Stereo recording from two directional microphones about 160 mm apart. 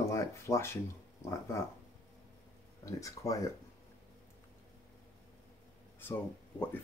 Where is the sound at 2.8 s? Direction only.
20° left (ahead or behind).